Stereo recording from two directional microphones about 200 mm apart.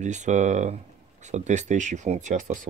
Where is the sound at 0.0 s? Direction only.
35° right (ahead or behind).